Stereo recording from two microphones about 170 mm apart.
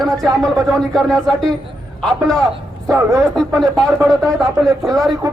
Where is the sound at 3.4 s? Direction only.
Centre (ahead or behind).